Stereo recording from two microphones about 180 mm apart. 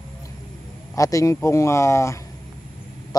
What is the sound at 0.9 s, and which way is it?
A man's voice, 20° left (ahead or behind).